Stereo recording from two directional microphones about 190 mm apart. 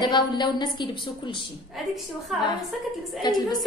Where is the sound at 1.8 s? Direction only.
Centre (ahead or behind).